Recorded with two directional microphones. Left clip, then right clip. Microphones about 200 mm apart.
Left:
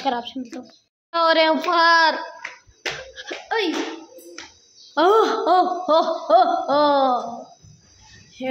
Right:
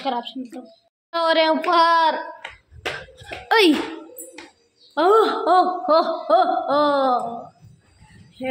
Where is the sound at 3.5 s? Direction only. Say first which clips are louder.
Right 7 dB; 20° right (ahead or behind).